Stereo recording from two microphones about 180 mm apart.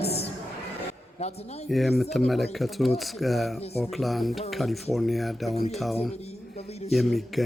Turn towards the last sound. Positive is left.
turn(degrees=0)  # may be behind; listen again after turning